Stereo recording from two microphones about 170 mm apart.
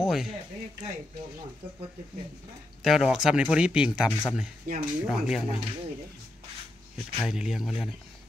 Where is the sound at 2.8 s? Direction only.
Centre (ahead or behind).